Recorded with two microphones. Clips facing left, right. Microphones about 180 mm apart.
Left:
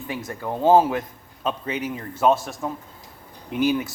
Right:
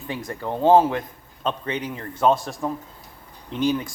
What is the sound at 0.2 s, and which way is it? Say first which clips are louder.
A man's voice: right 1 dB; 5° left (ahead or behind).